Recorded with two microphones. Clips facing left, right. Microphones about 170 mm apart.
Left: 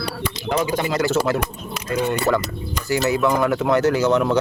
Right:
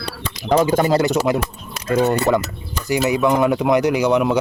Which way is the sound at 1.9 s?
45° right (ahead or behind).